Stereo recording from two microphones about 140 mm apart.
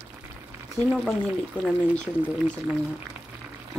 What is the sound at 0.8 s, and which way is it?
Speech, 25° right (ahead or behind).